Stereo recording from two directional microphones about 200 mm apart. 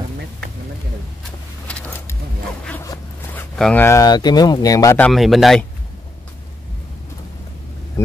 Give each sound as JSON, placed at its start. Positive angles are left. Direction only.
{"t": 1.7, "sound": "a sound", "side_deg": 5}
{"t": 2.6, "sound": "zipper", "side_deg": 10}
{"t": 3.5, "sound": "speech", "side_deg": 5}
{"t": 5.0, "sound": "speech", "side_deg": 0}